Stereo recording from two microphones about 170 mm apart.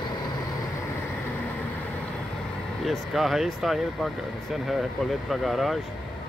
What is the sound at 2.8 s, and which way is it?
Speech, centre (ahead or behind).